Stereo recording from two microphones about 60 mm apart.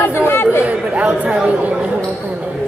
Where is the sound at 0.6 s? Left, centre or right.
Centre.